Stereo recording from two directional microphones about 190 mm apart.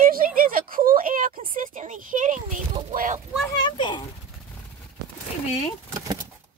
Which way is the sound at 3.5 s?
25° left (ahead or behind).